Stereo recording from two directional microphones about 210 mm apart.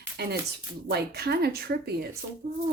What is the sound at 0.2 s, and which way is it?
Speech, 50° right (ahead or behind).